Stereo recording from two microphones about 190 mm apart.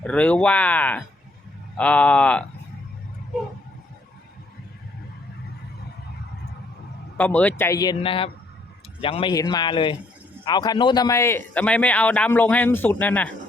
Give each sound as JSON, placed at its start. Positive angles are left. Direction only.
{"t": 0.0, "sound": "a man's voice", "side_deg": 5}
{"t": 7.2, "sound": "a man's voice", "side_deg": 10}